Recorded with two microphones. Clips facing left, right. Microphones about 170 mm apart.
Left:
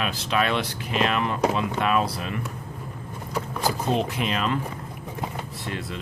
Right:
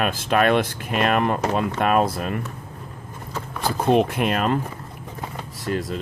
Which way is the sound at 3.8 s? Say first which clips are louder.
Right 10 dB; 55° right (ahead or behind).